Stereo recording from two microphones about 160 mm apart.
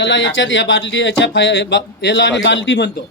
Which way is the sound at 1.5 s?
90° left.